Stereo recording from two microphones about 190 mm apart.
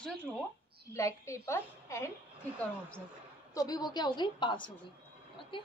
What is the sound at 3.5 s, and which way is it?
A woman's voice, 20° left (ahead or behind).